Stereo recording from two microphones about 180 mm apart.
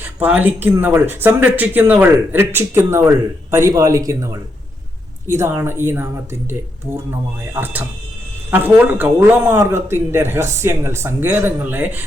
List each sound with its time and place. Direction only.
0.0 s speech: 10° right (ahead or behind)